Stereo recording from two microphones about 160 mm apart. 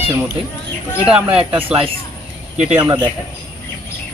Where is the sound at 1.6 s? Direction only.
35° right (ahead or behind).